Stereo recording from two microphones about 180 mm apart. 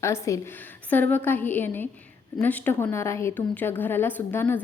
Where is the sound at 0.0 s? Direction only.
15° left (ahead or behind).